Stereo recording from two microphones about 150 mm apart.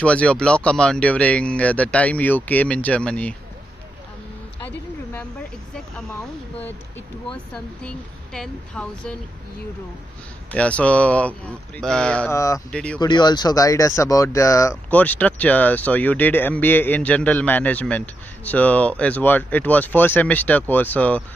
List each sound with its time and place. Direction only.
0.0 s speech: 10° left (ahead or behind)
7.2 s speech: 5° left (ahead or behind)
10.5 s speech: 10° left (ahead or behind)
12.3 s speech: 20° left (ahead or behind)
12.7 s speech: 10° left (ahead or behind)
13.0 s speech: 30° left (ahead or behind)
14.9 s speech: 10° left (ahead or behind)